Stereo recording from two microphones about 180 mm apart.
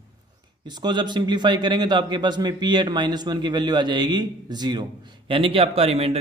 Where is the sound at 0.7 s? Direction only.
25° right (ahead or behind).